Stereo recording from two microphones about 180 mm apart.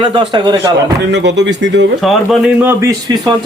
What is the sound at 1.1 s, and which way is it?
Speech, 75° right (ahead or behind).